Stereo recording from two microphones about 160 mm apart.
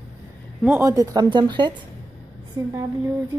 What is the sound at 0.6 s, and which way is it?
Speech, 15° right (ahead or behind).